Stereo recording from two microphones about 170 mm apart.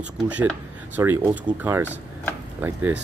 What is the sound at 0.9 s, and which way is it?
Speech, 10° right (ahead or behind).